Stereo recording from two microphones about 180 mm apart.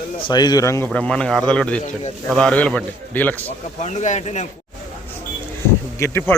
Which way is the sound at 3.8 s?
40° left (ahead or behind).